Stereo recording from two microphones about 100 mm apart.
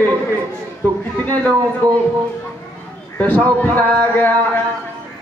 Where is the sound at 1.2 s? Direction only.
15° left (ahead or behind).